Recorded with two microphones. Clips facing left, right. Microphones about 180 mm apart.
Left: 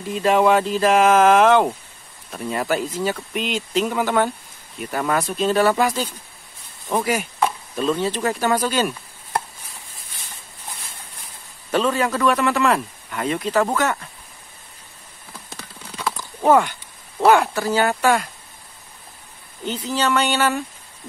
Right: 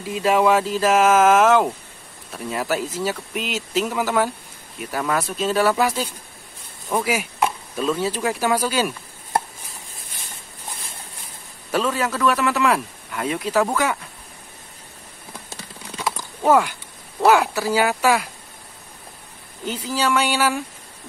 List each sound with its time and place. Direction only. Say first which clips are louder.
0.0 s speech: left 1 dB; 5° right (ahead or behind)
11.7 s speech: left 2 dB; 5° right (ahead or behind)
16.0 s horse: left 1 dB; 10° right (ahead or behind)
17.2 s speech: left 1 dB; 5° right (ahead or behind)
19.6 s speech: left 1 dB; 10° right (ahead or behind)